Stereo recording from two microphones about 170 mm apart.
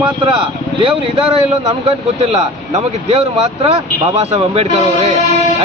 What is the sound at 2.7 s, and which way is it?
Speech, 40° right (ahead or behind).